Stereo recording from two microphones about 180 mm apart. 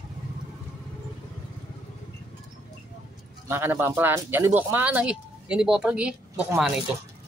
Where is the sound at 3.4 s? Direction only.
10° right (ahead or behind).